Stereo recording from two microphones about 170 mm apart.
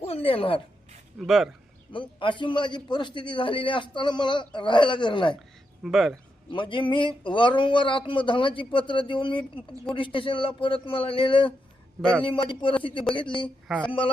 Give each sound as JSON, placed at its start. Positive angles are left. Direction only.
{"t": 0.0, "sound": "a sound", "side_deg": 35}
{"t": 1.2, "sound": "speech", "side_deg": 0}
{"t": 1.9, "sound": "a man's voice", "side_deg": 30}
{"t": 5.8, "sound": "speech", "side_deg": 0}
{"t": 6.5, "sound": "a man's voice", "side_deg": 30}